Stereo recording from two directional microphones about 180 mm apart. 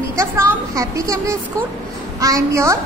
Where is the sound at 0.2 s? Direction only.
15° right (ahead or behind).